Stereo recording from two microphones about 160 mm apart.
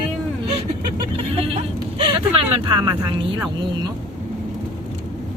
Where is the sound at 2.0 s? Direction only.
30° right (ahead or behind).